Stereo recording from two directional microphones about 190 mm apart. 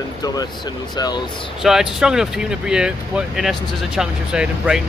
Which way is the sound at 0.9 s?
20° left (ahead or behind).